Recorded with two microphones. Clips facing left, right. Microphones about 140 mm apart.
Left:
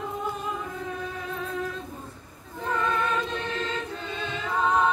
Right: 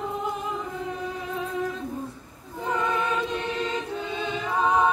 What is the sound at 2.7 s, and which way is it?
Music, 15° right (ahead or behind).